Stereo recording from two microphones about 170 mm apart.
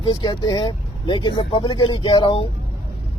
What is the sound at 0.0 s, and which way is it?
Speech, 25° left (ahead or behind).